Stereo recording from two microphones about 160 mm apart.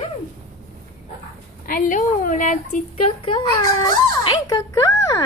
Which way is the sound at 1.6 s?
60° left (ahead or behind).